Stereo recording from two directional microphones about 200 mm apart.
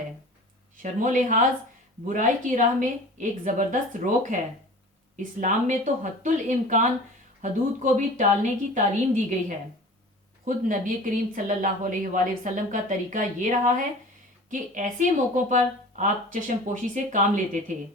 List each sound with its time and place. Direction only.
0.8 s speech: 40° right (ahead or behind)
10.4 s speech: 40° right (ahead or behind)